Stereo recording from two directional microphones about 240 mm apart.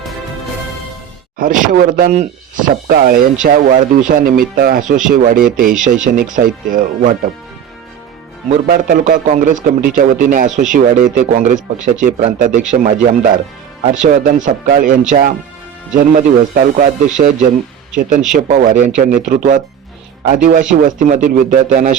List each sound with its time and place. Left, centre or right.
1.4 s speech: right
8.4 s speech: right
18.3 s speech: right